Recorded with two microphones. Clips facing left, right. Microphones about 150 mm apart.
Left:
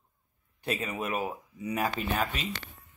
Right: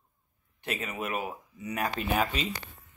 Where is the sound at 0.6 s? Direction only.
35° left (ahead or behind).